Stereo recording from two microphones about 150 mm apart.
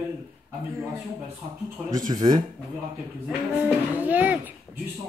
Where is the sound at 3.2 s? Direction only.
10° right (ahead or behind).